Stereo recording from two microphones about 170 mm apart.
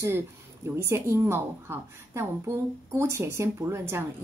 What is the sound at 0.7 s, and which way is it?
Speech, 15° right (ahead or behind).